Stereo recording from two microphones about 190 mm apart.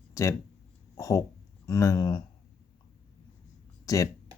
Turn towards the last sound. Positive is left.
turn(degrees=15)  # may be behind; listen again after turning